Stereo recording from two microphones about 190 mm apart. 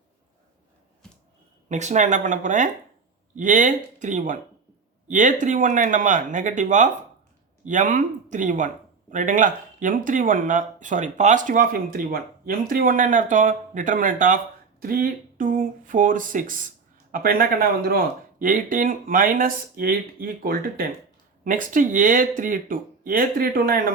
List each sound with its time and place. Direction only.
1.7 s speech: 40° right (ahead or behind)